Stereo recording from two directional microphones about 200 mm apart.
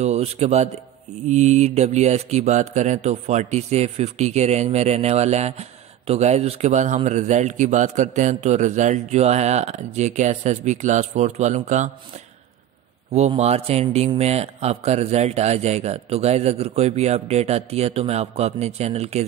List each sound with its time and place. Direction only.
0.0 s a man's voice: 30° right (ahead or behind)
13.1 s speech: 35° right (ahead or behind)